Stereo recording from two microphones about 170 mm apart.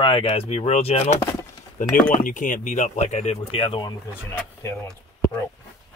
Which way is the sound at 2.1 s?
50° left (ahead or behind).